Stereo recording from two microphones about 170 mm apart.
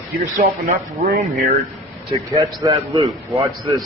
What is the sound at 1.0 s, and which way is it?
Speech, 65° right (ahead or behind).